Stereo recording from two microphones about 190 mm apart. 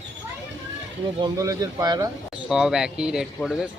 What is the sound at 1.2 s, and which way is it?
Speech, 15° right (ahead or behind).